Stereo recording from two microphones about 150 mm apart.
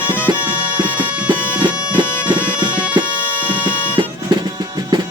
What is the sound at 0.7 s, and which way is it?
Music, 10° right (ahead or behind).